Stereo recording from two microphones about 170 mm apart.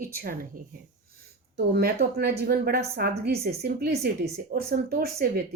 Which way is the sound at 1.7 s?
70° right (ahead or behind).